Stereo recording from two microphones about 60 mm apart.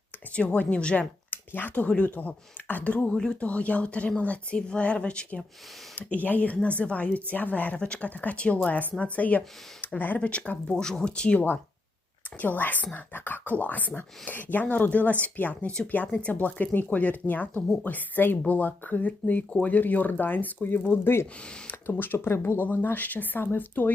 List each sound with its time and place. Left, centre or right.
0.3 s speech: left
1.3 s speech: left
9.8 s a sound: left
10.2 s speech: centre
11.3 s speech: left